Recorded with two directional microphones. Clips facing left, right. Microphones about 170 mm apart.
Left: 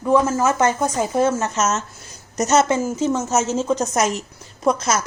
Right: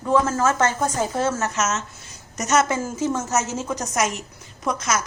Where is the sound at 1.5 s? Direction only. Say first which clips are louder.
Left 3 dB; 35° left (ahead or behind).